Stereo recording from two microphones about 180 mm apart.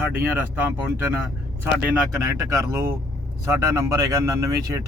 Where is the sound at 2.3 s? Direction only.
15° right (ahead or behind).